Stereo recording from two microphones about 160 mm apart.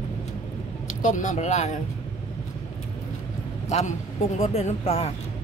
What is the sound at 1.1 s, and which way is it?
Speech, 50° left (ahead or behind).